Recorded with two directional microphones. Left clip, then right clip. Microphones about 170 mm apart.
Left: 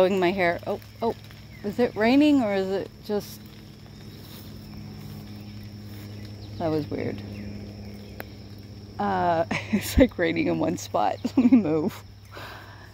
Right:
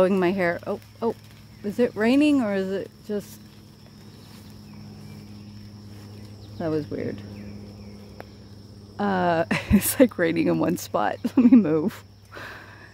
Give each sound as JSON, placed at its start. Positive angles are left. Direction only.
{"t": 0.0, "sound": "speech", "side_deg": -30}
{"t": 6.6, "sound": "speech", "side_deg": -40}
{"t": 8.9, "sound": "speech", "side_deg": -55}